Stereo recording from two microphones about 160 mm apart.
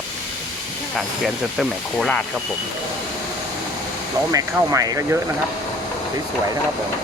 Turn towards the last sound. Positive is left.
turn(degrees=-20)  # may be behind; listen again after turning